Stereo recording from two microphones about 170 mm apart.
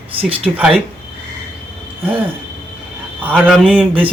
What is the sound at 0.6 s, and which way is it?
Speech, 10° right (ahead or behind).